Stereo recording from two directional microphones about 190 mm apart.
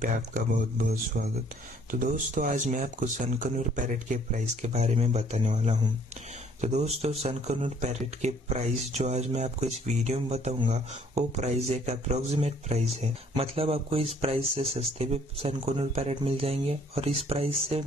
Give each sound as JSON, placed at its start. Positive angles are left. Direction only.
{"t": 1.1, "sound": "speech", "side_deg": -45}